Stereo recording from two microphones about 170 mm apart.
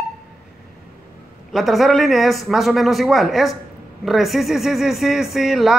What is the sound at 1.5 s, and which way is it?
Speech, centre (ahead or behind).